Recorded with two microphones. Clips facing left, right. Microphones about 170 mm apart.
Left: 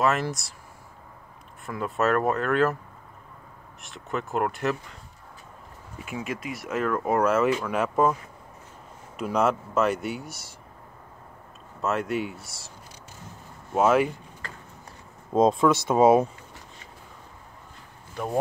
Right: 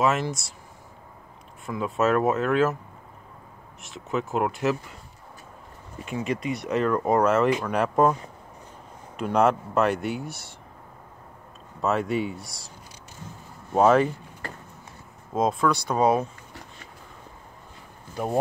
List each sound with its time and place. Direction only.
0.0 s speech: centre (ahead or behind)
1.7 s speech: centre (ahead or behind)
3.8 s speech: centre (ahead or behind)
6.0 s speech: 5° left (ahead or behind)
9.1 s speech: centre (ahead or behind)
11.8 s speech: centre (ahead or behind)
13.7 s speech: 5° left (ahead or behind)
15.3 s speech: 25° left (ahead or behind)